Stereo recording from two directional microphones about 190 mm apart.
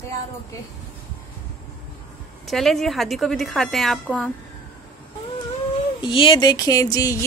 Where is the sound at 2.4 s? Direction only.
Centre (ahead or behind).